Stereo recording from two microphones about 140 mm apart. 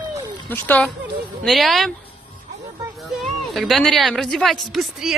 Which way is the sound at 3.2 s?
Centre (ahead or behind).